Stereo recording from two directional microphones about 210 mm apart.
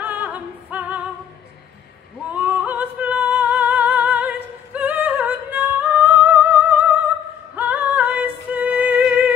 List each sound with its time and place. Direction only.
0.0 s music: 5° right (ahead or behind)
2.3 s music: 5° right (ahead or behind)